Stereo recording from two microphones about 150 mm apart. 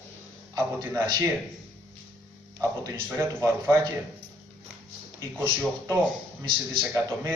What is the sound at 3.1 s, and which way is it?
Speech, 15° right (ahead or behind).